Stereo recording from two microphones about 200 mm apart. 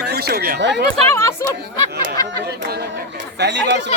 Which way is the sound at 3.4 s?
60° right (ahead or behind).